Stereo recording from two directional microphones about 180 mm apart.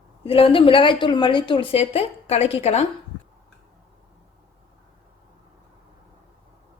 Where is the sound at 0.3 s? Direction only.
30° left (ahead or behind).